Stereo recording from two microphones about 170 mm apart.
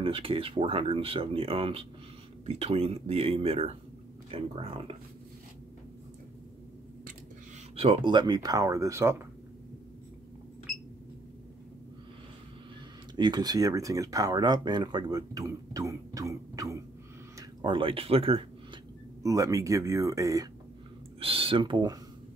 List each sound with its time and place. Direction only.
0.0 s speech: 30° right (ahead or behind)
7.7 s speech: 30° right (ahead or behind); by 9.2 s 15° right (ahead or behind)
13.1 s speech: 25° right (ahead or behind)
19.2 s speech: 20° right (ahead or behind)
21.2 s speech: 30° right (ahead or behind)